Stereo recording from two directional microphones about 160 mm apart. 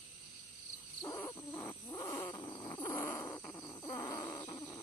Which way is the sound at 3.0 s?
10° left (ahead or behind).